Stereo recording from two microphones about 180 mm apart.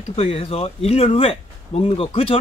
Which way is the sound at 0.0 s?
30° left (ahead or behind).